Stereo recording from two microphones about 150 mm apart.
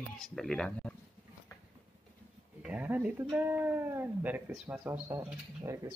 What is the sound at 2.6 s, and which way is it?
Speech, 10° right (ahead or behind).